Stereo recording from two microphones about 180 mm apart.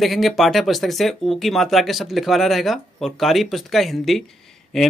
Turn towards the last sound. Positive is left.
turn(degrees=0)  # may be behind; listen again after turning